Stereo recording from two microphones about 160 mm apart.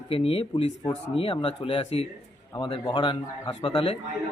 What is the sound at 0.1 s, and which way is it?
Speech, 35° left (ahead or behind).